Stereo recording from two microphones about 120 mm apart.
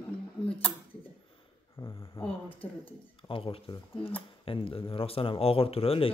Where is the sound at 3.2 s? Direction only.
50° left (ahead or behind).